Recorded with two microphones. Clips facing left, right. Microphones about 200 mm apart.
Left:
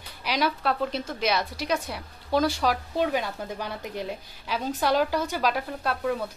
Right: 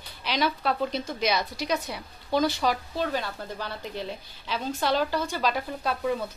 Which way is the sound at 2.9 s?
15° left (ahead or behind).